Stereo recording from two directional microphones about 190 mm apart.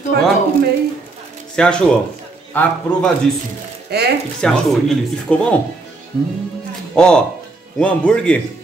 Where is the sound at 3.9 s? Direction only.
60° right (ahead or behind).